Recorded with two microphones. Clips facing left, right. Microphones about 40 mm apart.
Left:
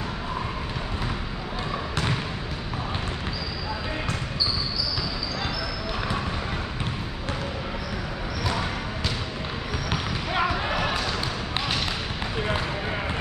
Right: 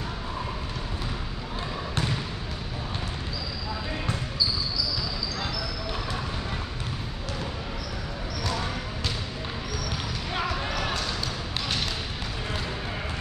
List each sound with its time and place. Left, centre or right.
10.3 s basketball bounce: centre